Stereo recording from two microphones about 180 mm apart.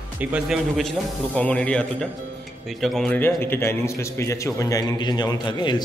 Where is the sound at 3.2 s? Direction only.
10° left (ahead or behind).